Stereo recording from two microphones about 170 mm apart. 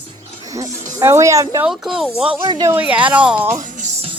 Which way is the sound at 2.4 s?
25° right (ahead or behind).